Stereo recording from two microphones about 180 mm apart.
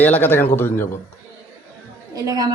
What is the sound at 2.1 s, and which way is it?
Speech, 20° right (ahead or behind).